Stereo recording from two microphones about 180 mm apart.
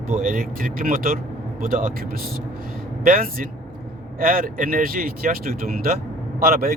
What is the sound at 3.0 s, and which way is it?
Speech, 50° right (ahead or behind).